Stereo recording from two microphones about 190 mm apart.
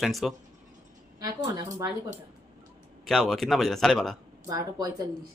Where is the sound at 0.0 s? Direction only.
Centre (ahead or behind).